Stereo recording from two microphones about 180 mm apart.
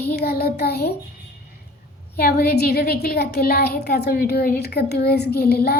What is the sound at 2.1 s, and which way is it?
A woman's voice, 60° left (ahead or behind).